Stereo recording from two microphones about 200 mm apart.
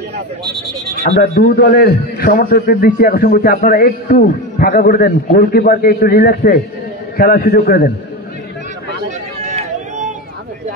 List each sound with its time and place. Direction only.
1.1 s a man's voice: 50° left (ahead or behind)
9.4 s run: 35° right (ahead or behind)